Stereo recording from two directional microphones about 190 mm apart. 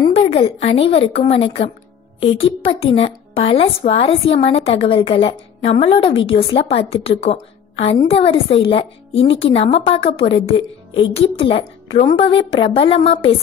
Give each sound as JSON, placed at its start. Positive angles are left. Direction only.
{"t": 0.2, "sound": "a woman's voice", "side_deg": 30}